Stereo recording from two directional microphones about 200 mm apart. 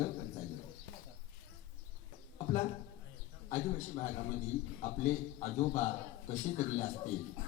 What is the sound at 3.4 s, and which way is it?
Music, 35° left (ahead or behind).